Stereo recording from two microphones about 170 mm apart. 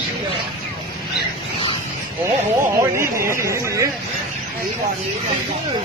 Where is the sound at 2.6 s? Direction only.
15° right (ahead or behind).